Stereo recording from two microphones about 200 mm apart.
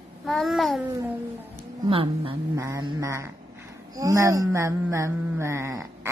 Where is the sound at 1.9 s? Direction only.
30° right (ahead or behind).